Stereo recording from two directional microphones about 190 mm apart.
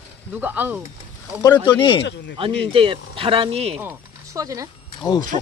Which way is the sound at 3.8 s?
15° right (ahead or behind).